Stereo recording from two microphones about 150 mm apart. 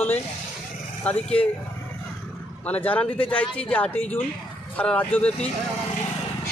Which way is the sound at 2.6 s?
10° left (ahead or behind).